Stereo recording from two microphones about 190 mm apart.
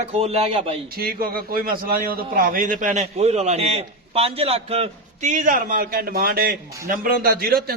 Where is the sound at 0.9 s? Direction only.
50° right (ahead or behind).